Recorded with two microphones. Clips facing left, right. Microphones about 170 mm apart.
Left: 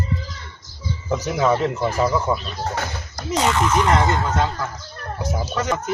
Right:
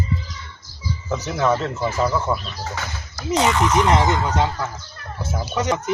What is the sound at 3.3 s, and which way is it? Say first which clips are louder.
Speech: right 1 dB; 20° right (ahead or behind).